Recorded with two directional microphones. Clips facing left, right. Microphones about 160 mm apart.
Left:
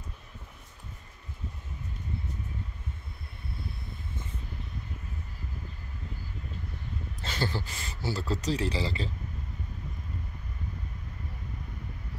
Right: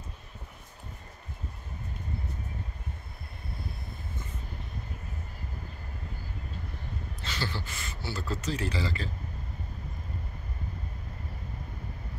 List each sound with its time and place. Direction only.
7.2 s a man's voice: 45° left (ahead or behind); by 9.1 s 30° left (ahead or behind)